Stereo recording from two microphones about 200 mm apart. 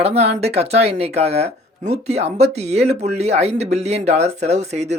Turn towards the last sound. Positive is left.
turn(degrees=-35)  # may be behind; listen again after turning